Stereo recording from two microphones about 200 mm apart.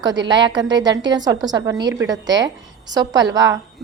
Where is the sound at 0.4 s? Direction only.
20° right (ahead or behind).